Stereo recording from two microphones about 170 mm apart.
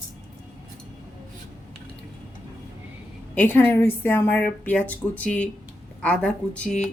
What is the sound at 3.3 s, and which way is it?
A woman's voice, 10° left (ahead or behind).